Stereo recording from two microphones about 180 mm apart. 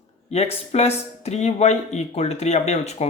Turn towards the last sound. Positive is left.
turn(degrees=40)  # may be behind; listen again after turning